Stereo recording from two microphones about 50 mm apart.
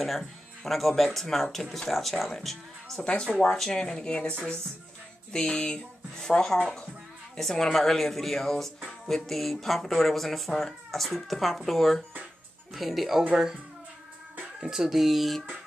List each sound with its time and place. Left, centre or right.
0.7 s speech: centre
14.7 s speech: centre